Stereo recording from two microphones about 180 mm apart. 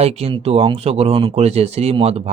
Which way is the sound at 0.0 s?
35° right (ahead or behind).